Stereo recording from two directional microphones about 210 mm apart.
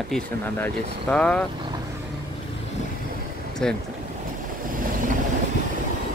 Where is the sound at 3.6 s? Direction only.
5° left (ahead or behind).